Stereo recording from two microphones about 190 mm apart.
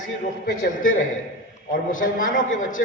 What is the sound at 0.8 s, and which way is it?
A man's voice, 45° left (ahead or behind).